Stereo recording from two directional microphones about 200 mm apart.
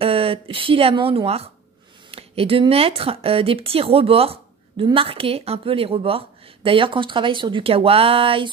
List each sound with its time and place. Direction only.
0.0 s speech: 30° right (ahead or behind)